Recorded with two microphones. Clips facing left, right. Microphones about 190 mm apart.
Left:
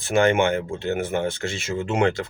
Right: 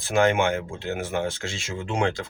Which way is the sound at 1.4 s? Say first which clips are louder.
Left 5 dB; 55° left (ahead or behind).